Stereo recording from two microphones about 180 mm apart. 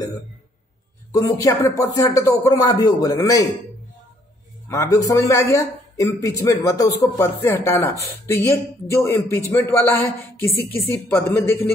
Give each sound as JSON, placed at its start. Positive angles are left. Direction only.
{"t": 1.1, "sound": "speech", "side_deg": 20}
{"t": 4.6, "sound": "speech", "side_deg": 20}